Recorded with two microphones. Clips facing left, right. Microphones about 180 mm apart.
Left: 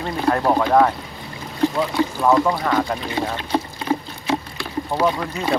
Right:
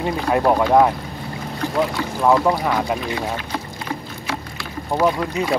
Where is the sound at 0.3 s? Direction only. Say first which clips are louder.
Right 1 dB; 10° right (ahead or behind).